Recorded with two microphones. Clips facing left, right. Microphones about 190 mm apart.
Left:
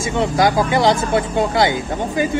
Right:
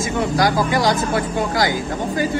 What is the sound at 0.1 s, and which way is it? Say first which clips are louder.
Speech: left 3 dB; 20° left (ahead or behind).